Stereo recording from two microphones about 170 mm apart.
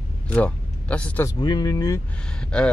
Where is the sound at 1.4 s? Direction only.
25° left (ahead or behind).